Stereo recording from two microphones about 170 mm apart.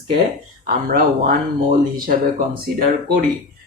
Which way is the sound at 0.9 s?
55° right (ahead or behind).